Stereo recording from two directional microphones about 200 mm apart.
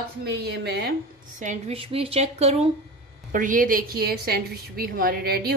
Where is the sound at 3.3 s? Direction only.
45° right (ahead or behind).